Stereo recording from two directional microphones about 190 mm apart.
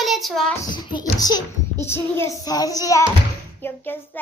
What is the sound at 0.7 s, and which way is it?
A child's voice, 25° left (ahead or behind).